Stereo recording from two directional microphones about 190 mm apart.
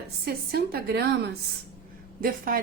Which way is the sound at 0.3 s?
55° right (ahead or behind).